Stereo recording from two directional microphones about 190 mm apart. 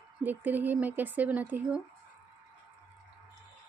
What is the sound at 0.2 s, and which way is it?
Speech, 10° right (ahead or behind).